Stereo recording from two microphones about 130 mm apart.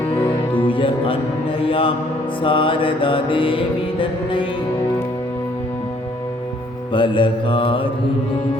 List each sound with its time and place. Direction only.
0.7 s music: 40° left (ahead or behind)
2.4 s mantra: 40° left (ahead or behind)
6.9 s mantra: 40° left (ahead or behind)